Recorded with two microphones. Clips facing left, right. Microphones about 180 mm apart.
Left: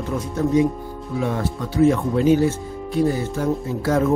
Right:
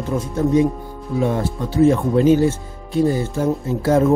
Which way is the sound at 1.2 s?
30° right (ahead or behind).